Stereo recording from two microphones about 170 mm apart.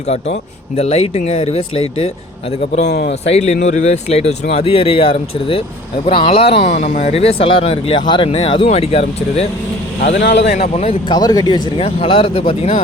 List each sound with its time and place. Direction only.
0.8 s speech: 35° left (ahead or behind)
2.8 s speech: 70° left (ahead or behind)
3.2 s speech: 40° left (ahead or behind)
10.1 s speech: 90° left
11.1 s speech: 25° left (ahead or behind)